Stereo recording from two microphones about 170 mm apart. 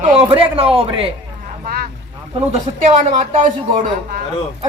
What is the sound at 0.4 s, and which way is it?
Speech, 30° right (ahead or behind).